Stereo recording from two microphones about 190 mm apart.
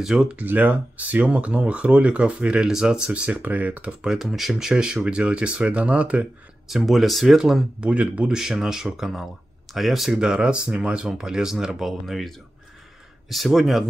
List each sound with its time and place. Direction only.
0.0 s speech: 5° right (ahead or behind)